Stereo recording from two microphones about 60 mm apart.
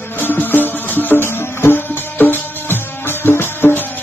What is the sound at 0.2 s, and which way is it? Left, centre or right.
Music, left.